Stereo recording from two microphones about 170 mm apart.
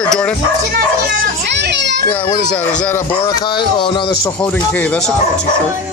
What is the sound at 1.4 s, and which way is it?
Children playing, 90° right.